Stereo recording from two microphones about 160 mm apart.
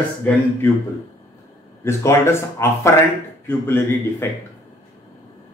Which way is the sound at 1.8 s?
15° left (ahead or behind).